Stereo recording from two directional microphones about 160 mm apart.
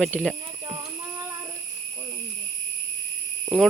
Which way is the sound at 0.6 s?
25° right (ahead or behind).